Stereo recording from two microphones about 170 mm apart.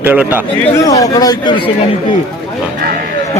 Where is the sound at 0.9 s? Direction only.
20° left (ahead or behind).